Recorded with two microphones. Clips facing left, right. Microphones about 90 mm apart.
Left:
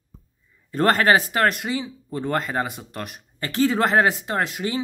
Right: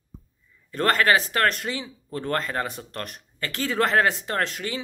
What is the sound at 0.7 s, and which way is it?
Speech, 25° left (ahead or behind).